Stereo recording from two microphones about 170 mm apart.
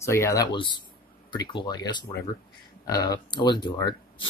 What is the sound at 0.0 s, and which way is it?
Speech, 15° left (ahead or behind).